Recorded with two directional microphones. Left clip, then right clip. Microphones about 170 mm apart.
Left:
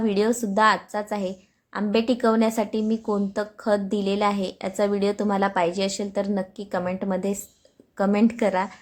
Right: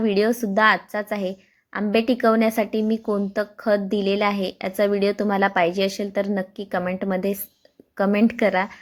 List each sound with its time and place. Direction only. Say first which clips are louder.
0.0 s a woman's voice: right 2 dB; 15° right (ahead or behind)